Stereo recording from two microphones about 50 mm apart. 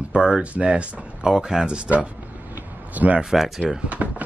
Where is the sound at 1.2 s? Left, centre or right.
Centre.